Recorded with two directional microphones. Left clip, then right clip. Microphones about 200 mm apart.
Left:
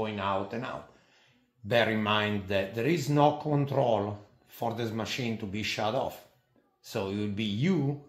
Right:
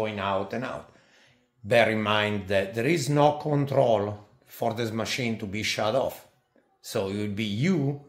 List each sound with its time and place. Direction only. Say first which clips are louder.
0.0 s speech: right 3 dB; 35° right (ahead or behind)